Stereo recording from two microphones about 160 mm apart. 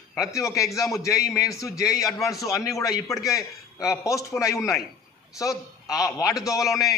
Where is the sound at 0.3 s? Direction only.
20° left (ahead or behind).